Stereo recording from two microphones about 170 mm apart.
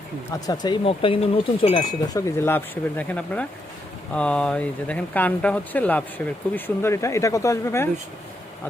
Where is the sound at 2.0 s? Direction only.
15° left (ahead or behind).